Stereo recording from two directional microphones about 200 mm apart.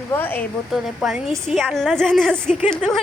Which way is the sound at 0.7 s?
Centre (ahead or behind).